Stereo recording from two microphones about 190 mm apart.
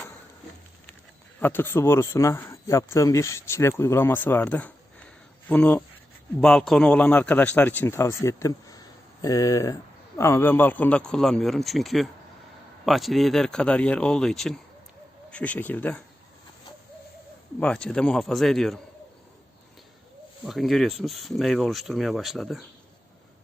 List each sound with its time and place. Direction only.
1.4 s speech: 10° left (ahead or behind)
17.6 s speech: 5° left (ahead or behind)
20.4 s speech: centre (ahead or behind)